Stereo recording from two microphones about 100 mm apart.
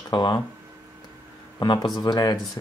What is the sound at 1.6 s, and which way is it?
Speech, 45° left (ahead or behind).